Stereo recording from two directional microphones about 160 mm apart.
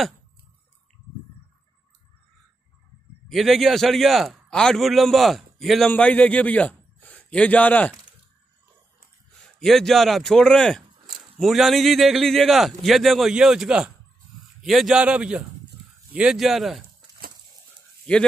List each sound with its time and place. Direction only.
3.3 s a man's voice: centre (ahead or behind)
9.6 s a man's voice: centre (ahead or behind)
18.1 s speech: 5° left (ahead or behind)